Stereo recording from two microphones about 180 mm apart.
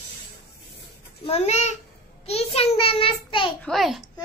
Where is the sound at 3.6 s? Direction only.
Centre (ahead or behind).